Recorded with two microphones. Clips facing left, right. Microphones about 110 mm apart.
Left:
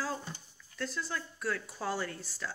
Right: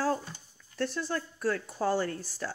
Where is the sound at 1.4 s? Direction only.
40° right (ahead or behind).